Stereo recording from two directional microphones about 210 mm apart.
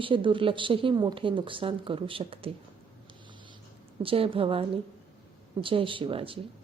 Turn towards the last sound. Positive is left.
turn(degrees=-25)  # may be behind; listen again after turning